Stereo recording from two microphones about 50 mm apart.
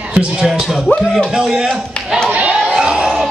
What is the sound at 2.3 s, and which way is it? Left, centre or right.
Music, right.